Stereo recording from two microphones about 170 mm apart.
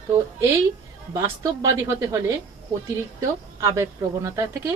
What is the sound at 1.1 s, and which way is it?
A woman's voice, 20° right (ahead or behind).